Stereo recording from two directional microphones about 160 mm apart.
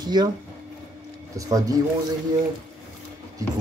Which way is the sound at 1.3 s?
20° right (ahead or behind).